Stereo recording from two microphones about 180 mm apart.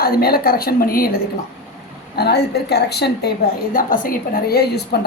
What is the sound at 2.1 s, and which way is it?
A woman's voice, 60° left (ahead or behind).